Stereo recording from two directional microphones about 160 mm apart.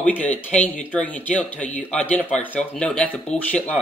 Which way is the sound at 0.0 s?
10° left (ahead or behind).